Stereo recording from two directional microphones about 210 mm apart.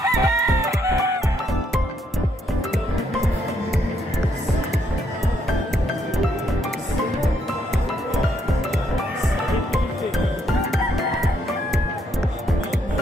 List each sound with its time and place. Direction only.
0.0 s chicken: 15° right (ahead or behind)
10.7 s chicken: centre (ahead or behind)